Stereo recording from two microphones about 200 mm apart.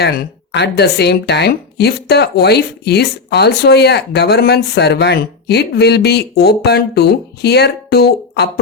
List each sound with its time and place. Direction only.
0.5 s speech: 55° left (ahead or behind)